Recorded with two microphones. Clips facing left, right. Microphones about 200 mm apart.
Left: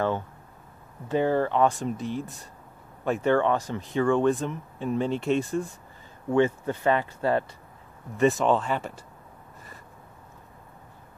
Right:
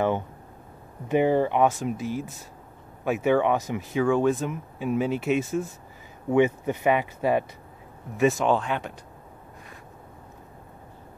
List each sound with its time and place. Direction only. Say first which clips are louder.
1.0 s speech: right 2 dB; 15° right (ahead or behind)
1.7 s speech: right 1 dB; 5° right (ahead or behind)
6.3 s speech: right 2 dB; 15° right (ahead or behind)
8.2 s speech: even; centre (ahead or behind)